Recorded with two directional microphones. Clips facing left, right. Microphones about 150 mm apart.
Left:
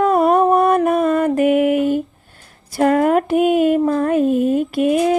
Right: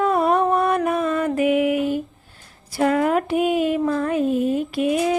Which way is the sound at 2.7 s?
50° left (ahead or behind).